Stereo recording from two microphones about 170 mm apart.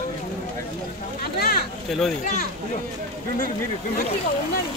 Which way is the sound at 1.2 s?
65° left (ahead or behind).